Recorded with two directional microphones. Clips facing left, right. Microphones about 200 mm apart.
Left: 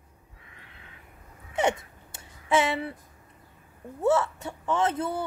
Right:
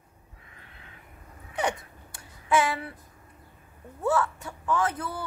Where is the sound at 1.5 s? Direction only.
25° left (ahead or behind).